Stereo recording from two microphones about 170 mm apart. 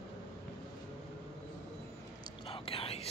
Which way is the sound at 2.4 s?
35° left (ahead or behind).